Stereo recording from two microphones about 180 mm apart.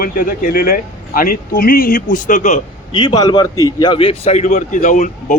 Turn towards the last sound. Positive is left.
turn(degrees=45)  # may be behind; listen again after turning